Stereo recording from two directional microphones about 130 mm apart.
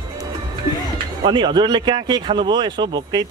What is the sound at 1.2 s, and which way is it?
Speech, 35° right (ahead or behind).